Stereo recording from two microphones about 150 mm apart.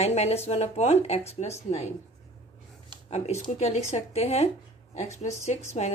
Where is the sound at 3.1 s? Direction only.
45° left (ahead or behind).